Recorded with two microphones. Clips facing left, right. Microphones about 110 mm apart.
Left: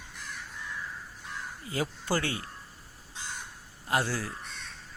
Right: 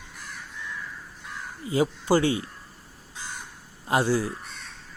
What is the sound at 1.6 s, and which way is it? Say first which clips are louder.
Speech: right 9 dB; 20° right (ahead or behind).